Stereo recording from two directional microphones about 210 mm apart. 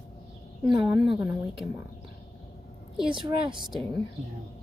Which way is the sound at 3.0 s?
25° right (ahead or behind).